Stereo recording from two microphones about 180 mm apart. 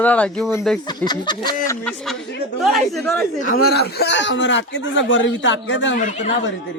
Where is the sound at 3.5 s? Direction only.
65° left (ahead or behind); by 6.0 s 90° left.